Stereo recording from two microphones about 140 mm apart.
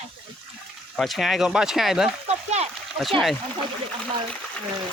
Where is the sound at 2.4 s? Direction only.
50° right (ahead or behind).